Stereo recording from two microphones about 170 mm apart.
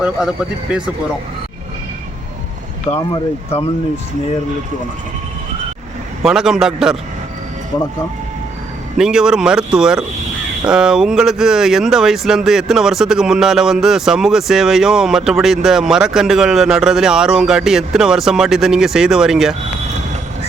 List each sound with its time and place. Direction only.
0.0 s speech: 5° right (ahead or behind)
2.9 s speech: 30° left (ahead or behind)
6.2 s speech: 5° right (ahead or behind)
9.0 s speech: 5° right (ahead or behind)